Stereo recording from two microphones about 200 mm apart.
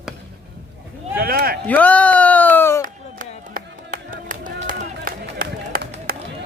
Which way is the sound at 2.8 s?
40° right (ahead or behind).